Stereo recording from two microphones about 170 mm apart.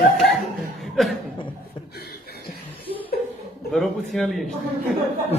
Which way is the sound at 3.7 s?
Centre (ahead or behind).